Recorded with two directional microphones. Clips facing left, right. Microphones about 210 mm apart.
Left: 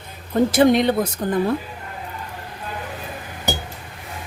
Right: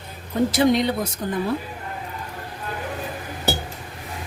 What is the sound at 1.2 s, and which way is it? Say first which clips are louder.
Speech: left 3 dB; 55° left (ahead or behind).